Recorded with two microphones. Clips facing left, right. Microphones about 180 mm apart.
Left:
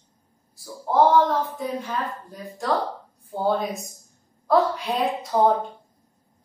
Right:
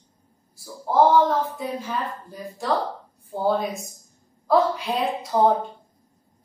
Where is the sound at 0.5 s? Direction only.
Centre (ahead or behind).